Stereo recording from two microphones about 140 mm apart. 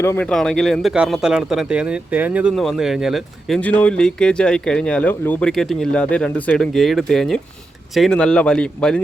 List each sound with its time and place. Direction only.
0.0 s speech: 15° left (ahead or behind)
0.3 s speech: 5° left (ahead or behind)
3.6 s speech: 10° left (ahead or behind)